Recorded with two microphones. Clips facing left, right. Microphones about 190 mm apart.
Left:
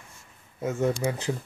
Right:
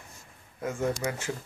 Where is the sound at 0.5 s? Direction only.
20° left (ahead or behind).